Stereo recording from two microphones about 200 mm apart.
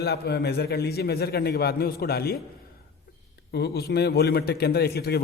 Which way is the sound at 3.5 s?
55° left (ahead or behind).